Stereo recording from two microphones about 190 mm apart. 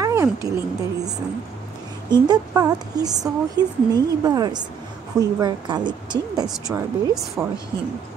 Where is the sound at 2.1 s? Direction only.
20° right (ahead or behind).